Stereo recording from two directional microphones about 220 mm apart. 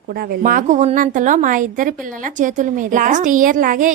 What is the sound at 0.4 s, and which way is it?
A woman's voice, 35° right (ahead or behind).